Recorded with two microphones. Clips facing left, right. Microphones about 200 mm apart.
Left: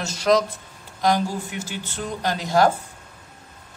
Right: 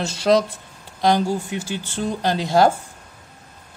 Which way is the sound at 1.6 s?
30° right (ahead or behind).